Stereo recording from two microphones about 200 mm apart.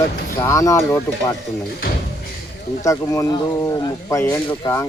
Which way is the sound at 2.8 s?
15° left (ahead or behind).